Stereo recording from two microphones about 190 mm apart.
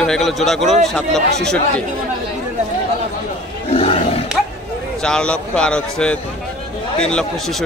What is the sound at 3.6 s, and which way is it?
Roar, 30° left (ahead or behind).